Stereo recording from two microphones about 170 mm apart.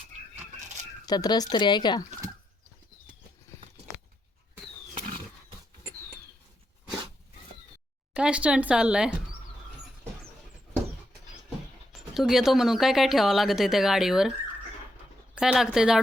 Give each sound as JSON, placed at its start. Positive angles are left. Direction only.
{"t": 1.0, "sound": "speech", "side_deg": 25}
{"t": 8.1, "sound": "speech", "side_deg": -5}
{"t": 11.4, "sound": "speech", "side_deg": 0}
{"t": 15.4, "sound": "speech", "side_deg": -5}